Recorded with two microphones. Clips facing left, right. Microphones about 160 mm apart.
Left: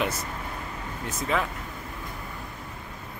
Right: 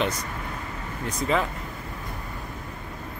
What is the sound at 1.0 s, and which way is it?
Speech, centre (ahead or behind).